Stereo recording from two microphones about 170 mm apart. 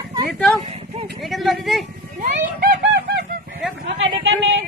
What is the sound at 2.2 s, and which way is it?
Speech, 50° right (ahead or behind).